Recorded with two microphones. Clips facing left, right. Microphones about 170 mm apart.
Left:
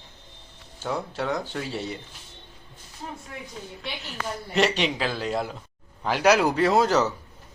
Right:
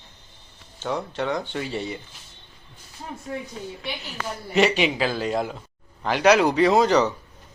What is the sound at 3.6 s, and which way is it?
Speech, centre (ahead or behind).